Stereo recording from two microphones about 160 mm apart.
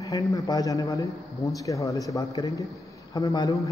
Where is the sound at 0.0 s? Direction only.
20° left (ahead or behind).